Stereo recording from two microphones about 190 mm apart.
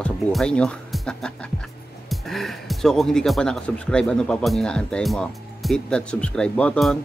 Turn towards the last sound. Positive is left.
turn(degrees=5)  # may be behind; listen again after turning